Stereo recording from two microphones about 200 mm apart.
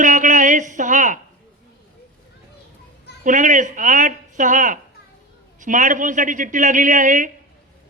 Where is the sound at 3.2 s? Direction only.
40° right (ahead or behind).